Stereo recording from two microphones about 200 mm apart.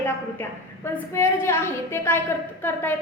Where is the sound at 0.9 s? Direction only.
10° left (ahead or behind).